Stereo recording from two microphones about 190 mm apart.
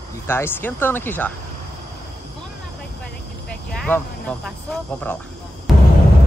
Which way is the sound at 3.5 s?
5° left (ahead or behind).